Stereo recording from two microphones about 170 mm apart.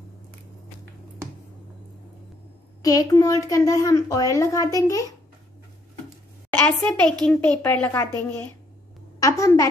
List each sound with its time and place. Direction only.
2.8 s a woman's voice: 20° left (ahead or behind)
6.6 s a woman's voice: 5° left (ahead or behind)